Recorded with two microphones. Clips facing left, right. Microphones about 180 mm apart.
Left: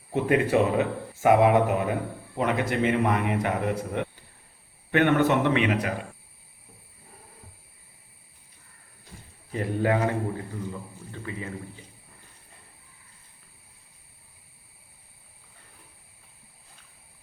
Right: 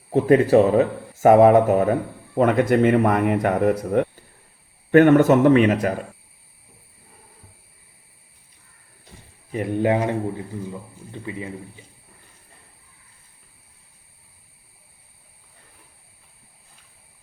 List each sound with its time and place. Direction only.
0.1 s speech: 35° right (ahead or behind)
9.5 s a man's voice: 20° right (ahead or behind)